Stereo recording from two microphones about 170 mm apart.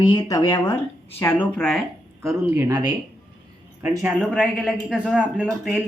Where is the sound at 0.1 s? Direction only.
20° left (ahead or behind).